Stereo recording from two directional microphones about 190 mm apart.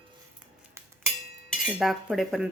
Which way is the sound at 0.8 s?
15° right (ahead or behind).